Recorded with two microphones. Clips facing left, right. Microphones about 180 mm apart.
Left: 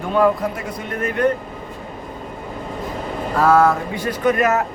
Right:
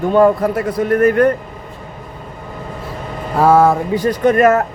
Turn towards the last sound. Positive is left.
turn(degrees=-50)  # may be behind; listen again after turning